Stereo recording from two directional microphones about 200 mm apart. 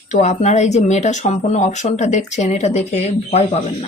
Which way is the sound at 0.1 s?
35° left (ahead or behind).